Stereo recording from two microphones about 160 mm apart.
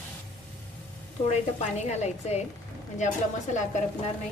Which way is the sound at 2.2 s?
45° left (ahead or behind).